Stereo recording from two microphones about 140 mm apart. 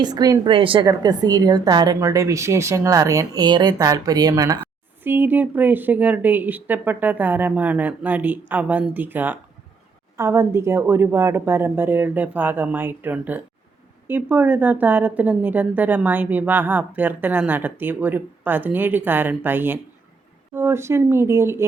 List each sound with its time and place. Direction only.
0.0 s a woman's voice: 30° right (ahead or behind)
0.9 s a woman's voice: 30° right (ahead or behind)
5.0 s a woman's voice: 15° right (ahead or behind)